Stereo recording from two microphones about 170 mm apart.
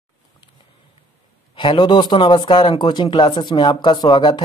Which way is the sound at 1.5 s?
30° left (ahead or behind).